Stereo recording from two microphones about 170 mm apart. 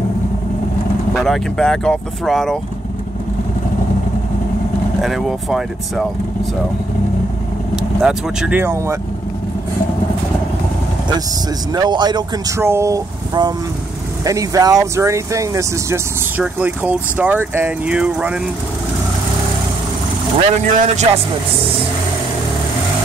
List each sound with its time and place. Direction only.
1.1 s speech: centre (ahead or behind)
5.0 s speech: centre (ahead or behind)
7.7 s speech: 5° right (ahead or behind)
11.7 s speech: 25° right (ahead or behind); by 18.4 s 5° right (ahead or behind)
20.7 s a man's voice: 45° right (ahead or behind)